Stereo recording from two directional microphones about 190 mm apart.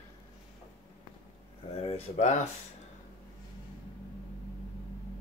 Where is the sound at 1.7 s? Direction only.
35° left (ahead or behind).